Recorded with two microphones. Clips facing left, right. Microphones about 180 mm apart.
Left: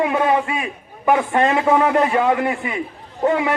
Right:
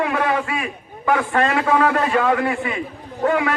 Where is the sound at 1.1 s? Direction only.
20° left (ahead or behind).